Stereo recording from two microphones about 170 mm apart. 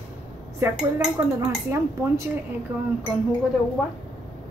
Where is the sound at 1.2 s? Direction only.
20° right (ahead or behind).